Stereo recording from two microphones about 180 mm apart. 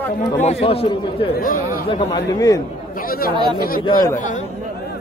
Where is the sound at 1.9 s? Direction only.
25° left (ahead or behind).